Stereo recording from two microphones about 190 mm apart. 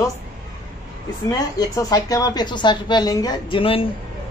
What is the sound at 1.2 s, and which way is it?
Speech, 20° left (ahead or behind).